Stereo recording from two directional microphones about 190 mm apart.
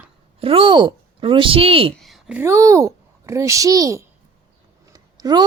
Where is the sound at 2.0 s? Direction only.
5° right (ahead or behind).